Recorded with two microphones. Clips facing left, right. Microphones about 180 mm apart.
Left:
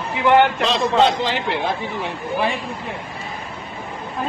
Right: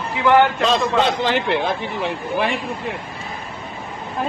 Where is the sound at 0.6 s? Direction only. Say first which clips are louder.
Left 1 dB; 50° right (ahead or behind).